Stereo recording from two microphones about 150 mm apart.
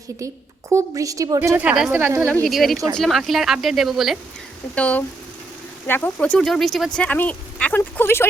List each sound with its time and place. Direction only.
0.7 s a woman's voice: 20° right (ahead or behind)
2.5 s speech: centre (ahead or behind)
4.7 s speech: 10° left (ahead or behind)